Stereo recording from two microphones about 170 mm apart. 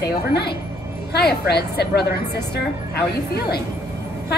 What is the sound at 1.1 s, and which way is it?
A woman's voice, 70° left (ahead or behind).